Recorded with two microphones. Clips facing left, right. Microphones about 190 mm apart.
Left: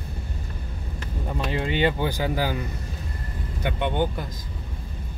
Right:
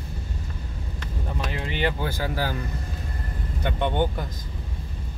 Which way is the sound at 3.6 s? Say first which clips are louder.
Even; 10° left (ahead or behind).